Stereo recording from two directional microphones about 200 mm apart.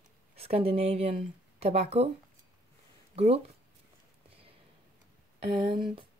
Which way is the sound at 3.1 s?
30° right (ahead or behind).